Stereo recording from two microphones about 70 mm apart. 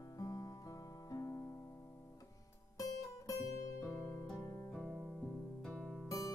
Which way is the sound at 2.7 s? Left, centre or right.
Left.